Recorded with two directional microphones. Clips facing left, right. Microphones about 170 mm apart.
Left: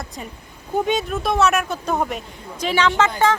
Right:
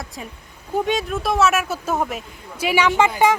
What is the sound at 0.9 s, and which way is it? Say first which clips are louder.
Speech: even; centre (ahead or behind).